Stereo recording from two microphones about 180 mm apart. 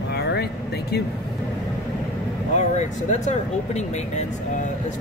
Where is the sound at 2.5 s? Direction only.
40° left (ahead or behind).